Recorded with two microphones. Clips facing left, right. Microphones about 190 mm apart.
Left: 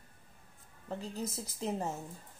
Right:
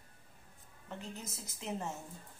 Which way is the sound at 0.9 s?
35° left (ahead or behind).